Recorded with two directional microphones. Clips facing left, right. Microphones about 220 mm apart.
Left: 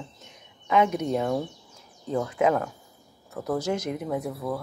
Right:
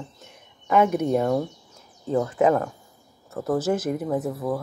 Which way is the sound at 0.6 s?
5° right (ahead or behind).